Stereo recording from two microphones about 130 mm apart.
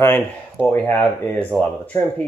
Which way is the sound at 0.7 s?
15° left (ahead or behind).